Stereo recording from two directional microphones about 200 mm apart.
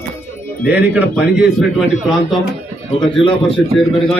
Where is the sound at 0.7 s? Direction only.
10° right (ahead or behind).